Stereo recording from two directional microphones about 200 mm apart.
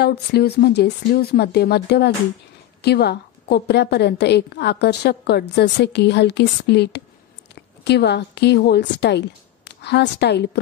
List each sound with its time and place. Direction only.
0.0 s a woman's voice: 55° left (ahead or behind)